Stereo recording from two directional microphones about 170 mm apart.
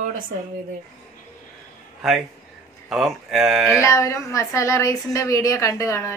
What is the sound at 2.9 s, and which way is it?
Speech, centre (ahead or behind).